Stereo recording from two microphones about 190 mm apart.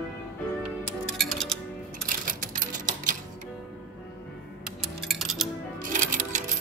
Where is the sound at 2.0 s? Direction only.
45° right (ahead or behind).